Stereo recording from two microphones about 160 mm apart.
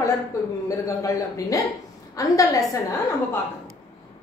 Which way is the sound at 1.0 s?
20° left (ahead or behind).